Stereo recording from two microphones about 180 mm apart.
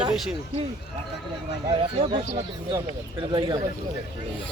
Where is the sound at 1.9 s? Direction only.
25° right (ahead or behind).